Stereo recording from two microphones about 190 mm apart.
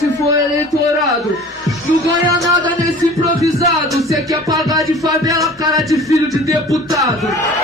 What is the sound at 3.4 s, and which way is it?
Speech, 15° right (ahead or behind).